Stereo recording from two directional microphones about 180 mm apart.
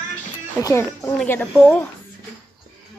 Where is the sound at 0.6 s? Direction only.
20° left (ahead or behind).